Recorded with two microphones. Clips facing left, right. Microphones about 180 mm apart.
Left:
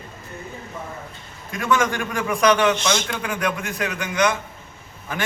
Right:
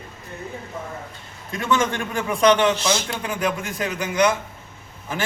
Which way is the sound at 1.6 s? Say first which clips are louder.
Left 1 dB; 25° right (ahead or behind).